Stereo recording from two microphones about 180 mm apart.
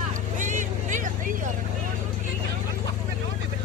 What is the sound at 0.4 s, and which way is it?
Vehicle, 45° right (ahead or behind).